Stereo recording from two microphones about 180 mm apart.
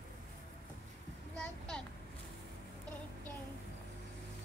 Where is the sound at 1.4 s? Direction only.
5° left (ahead or behind).